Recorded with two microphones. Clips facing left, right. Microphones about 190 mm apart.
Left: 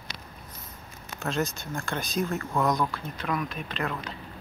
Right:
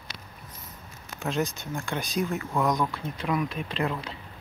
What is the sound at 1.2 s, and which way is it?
Speech, 15° right (ahead or behind).